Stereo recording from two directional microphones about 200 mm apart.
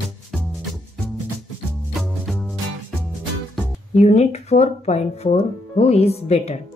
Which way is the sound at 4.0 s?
35° left (ahead or behind).